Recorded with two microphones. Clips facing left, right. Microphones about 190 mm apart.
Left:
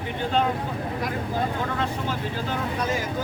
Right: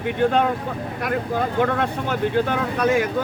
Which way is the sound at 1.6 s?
60° right (ahead or behind).